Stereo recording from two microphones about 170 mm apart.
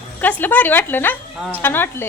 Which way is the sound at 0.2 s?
10° left (ahead or behind).